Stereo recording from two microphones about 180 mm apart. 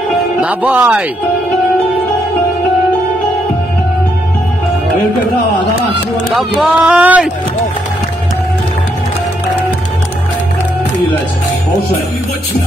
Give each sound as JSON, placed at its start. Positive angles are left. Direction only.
{"t": 0.4, "sound": "speech", "side_deg": -10}
{"t": 6.3, "sound": "speech", "side_deg": -5}